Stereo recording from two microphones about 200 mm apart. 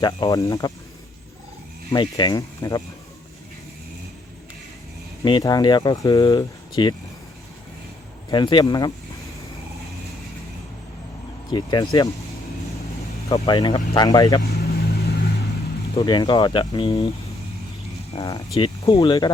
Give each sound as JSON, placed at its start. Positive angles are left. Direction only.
{"t": 0.0, "sound": "speech", "side_deg": 20}
{"t": 1.9, "sound": "speech", "side_deg": 20}
{"t": 5.2, "sound": "speech", "side_deg": 20}
{"t": 8.3, "sound": "speech", "side_deg": 20}
{"t": 11.5, "sound": "speech", "side_deg": 20}
{"t": 13.4, "sound": "speech", "side_deg": 20}
{"t": 14.4, "sound": "vehicle", "side_deg": 55}
{"t": 16.0, "sound": "speech", "side_deg": 20}
{"t": 18.2, "sound": "speech", "side_deg": 20}